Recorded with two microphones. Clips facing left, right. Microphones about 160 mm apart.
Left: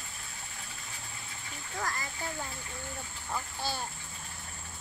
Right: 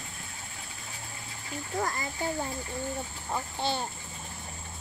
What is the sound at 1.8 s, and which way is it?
Speech, 25° right (ahead or behind).